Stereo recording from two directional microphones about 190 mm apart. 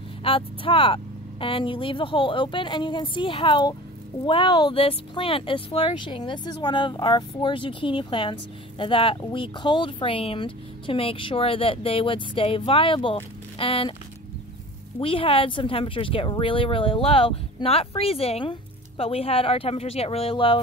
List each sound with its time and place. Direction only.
0.2 s speech: 30° left (ahead or behind)
15.0 s speech: 30° left (ahead or behind)